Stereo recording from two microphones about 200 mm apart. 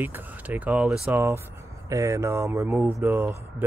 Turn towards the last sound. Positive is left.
turn(degrees=-15)  # may be behind; listen again after turning